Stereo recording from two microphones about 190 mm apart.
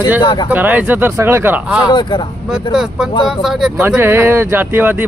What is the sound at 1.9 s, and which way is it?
Speech, 25° left (ahead or behind).